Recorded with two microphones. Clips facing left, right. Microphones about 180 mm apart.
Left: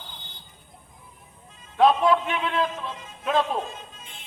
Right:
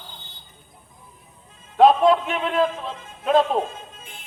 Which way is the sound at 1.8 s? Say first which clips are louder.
Right 4 dB; 45° right (ahead or behind).